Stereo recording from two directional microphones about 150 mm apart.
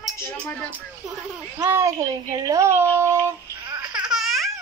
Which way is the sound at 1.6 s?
15° right (ahead or behind).